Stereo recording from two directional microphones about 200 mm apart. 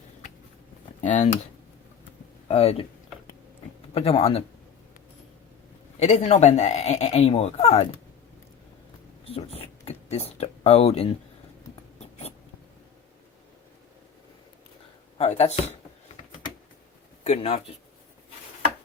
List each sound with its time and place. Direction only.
1.0 s speech: 35° left (ahead or behind)
2.5 s speech: 30° left (ahead or behind)
3.9 s speech: 30° left (ahead or behind)
6.0 s speech: 35° left (ahead or behind)
9.2 s speech: 30° left (ahead or behind)
15.2 s speech: 30° left (ahead or behind)
17.2 s speech: 30° left (ahead or behind)